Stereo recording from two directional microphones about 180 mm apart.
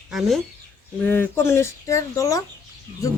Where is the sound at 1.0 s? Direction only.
10° left (ahead or behind).